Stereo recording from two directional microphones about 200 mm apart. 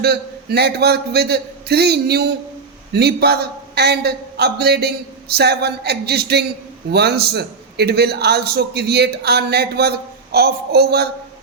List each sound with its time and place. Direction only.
0.0 s a man's voice: 55° right (ahead or behind)